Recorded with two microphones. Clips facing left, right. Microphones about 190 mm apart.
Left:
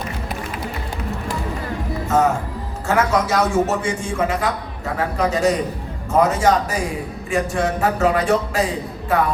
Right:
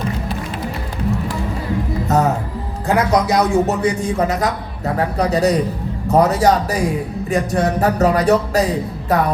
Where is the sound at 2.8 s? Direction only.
35° right (ahead or behind).